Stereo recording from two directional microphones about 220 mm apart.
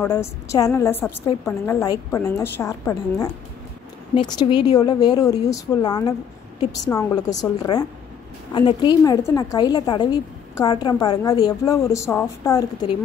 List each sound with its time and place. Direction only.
0.0 s a woman's voice: 10° left (ahead or behind)